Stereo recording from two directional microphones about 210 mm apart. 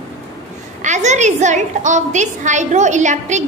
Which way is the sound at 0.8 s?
35° right (ahead or behind).